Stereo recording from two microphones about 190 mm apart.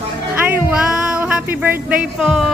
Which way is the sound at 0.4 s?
5° right (ahead or behind).